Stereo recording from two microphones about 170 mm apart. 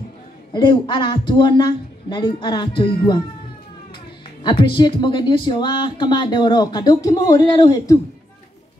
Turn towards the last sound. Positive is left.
turn(degrees=20)  # may be behind; listen again after turning